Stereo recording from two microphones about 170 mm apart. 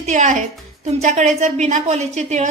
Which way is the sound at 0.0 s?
45° right (ahead or behind).